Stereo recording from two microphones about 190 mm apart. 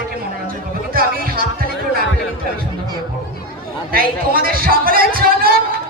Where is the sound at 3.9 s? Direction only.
50° right (ahead or behind).